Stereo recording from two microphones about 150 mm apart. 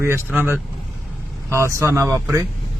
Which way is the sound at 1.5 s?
20° right (ahead or behind).